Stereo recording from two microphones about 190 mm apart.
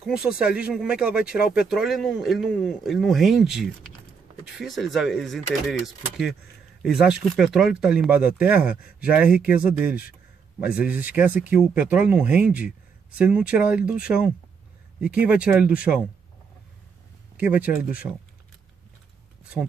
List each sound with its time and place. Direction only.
0.0 s speech: 5° right (ahead or behind)
17.4 s speech: 10° right (ahead or behind)